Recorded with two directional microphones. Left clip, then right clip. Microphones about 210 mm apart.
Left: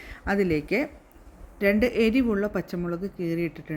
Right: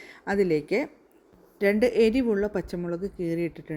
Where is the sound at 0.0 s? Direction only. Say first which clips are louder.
Even; 5° right (ahead or behind).